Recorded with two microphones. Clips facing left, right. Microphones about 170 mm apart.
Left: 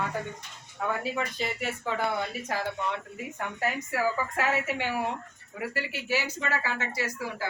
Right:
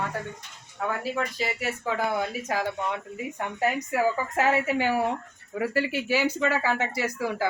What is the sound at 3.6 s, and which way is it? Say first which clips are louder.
A woman's voice: right 4 dB; 20° right (ahead or behind).